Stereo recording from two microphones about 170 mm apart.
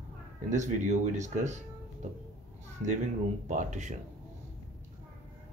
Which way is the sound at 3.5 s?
45° right (ahead or behind).